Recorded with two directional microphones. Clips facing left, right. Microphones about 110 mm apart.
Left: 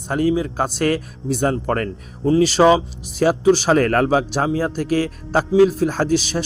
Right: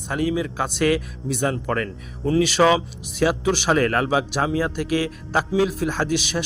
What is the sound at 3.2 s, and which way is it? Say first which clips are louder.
A man's voice: left 5 dB; 40° left (ahead or behind).